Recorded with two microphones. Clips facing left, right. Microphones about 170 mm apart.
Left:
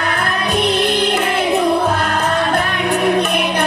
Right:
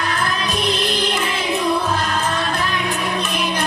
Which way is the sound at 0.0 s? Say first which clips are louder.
Left 3 dB; 60° left (ahead or behind).